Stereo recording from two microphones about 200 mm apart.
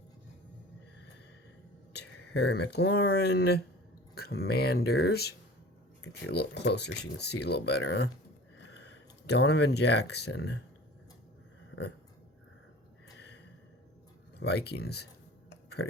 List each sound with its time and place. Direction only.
1.9 s speech: 55° left (ahead or behind)
14.3 s speech: 55° left (ahead or behind)